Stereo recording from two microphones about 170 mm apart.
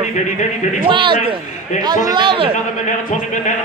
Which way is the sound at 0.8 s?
30° right (ahead or behind).